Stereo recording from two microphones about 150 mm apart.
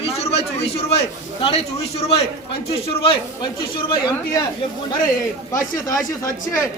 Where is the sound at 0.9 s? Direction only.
40° left (ahead or behind).